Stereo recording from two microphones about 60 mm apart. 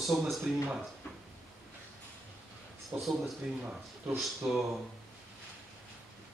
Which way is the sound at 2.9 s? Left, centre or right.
Right.